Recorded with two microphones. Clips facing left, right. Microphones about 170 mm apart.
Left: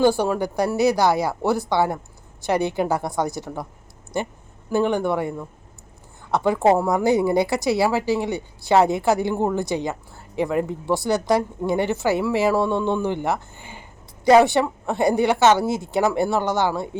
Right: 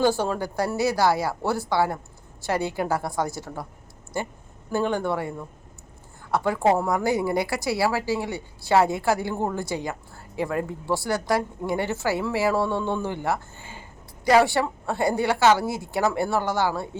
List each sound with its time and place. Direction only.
0.0 s speech: 15° left (ahead or behind)
6.3 s speech: 20° left (ahead or behind)
12.7 s a man's voice: 10° right (ahead or behind)
13.0 s speech: 20° left (ahead or behind)